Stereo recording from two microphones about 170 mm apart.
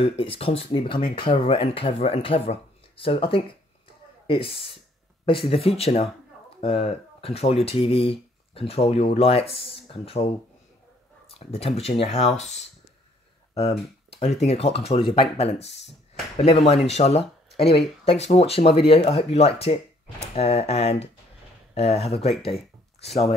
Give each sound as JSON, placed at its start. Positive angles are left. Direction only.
{"t": 0.0, "sound": "speech", "side_deg": 35}